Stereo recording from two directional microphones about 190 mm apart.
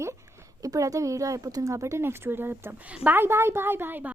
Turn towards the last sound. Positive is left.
turn(degrees=-10)  # may be behind; listen again after turning